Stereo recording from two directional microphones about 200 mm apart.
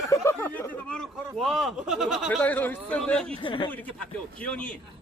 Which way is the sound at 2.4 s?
10° left (ahead or behind).